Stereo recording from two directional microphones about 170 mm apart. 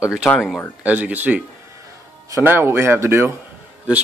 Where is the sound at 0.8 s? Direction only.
10° right (ahead or behind).